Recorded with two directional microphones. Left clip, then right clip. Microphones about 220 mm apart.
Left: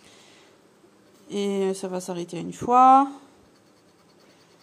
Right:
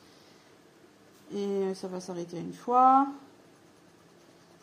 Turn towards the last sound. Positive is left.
turn(degrees=30)  # may be behind; listen again after turning